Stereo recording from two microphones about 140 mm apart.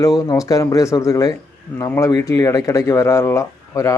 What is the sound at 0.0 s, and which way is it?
Speech, 25° left (ahead or behind).